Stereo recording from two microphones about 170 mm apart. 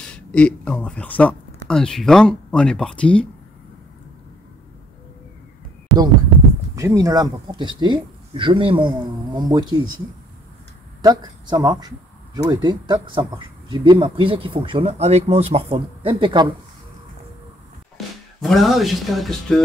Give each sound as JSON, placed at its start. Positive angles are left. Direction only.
{"t": 0.0, "sound": "speech", "side_deg": 5}
{"t": 5.9, "sound": "a sound", "side_deg": 0}
{"t": 6.7, "sound": "speech", "side_deg": -20}
{"t": 11.0, "sound": "speech", "side_deg": -25}
{"t": 17.9, "sound": "speech", "side_deg": 0}